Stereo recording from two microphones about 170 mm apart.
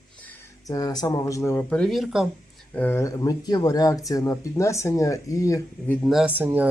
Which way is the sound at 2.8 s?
15° left (ahead or behind).